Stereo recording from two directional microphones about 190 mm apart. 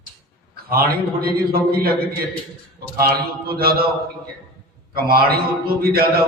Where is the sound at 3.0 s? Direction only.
50° right (ahead or behind).